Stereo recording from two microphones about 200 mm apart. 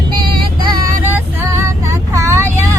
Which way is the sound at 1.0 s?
15° right (ahead or behind).